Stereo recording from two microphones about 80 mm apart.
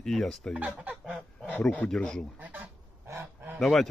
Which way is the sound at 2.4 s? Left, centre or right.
Right.